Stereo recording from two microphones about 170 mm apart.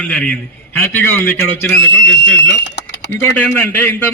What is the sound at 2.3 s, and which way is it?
Speech, 90° left.